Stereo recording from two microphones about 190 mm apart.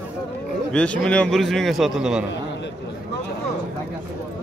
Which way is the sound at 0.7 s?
5° left (ahead or behind).